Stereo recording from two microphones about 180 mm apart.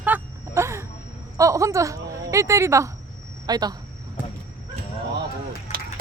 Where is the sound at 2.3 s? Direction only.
15° right (ahead or behind).